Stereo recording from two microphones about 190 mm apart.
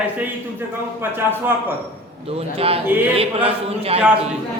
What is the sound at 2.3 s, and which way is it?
A man's voice, 30° right (ahead or behind).